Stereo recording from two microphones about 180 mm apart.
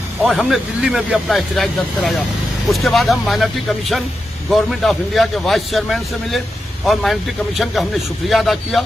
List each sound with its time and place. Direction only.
0.2 s a man's voice: centre (ahead or behind)